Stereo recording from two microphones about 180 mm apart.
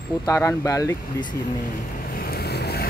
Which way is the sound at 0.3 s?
15° left (ahead or behind).